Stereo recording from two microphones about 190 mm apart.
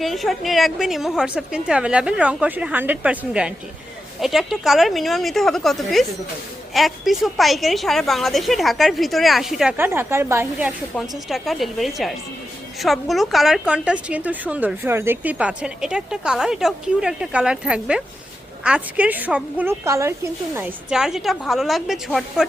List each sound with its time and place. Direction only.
0.0 s a woman's voice: centre (ahead or behind)
10.9 s a woman's voice: centre (ahead or behind)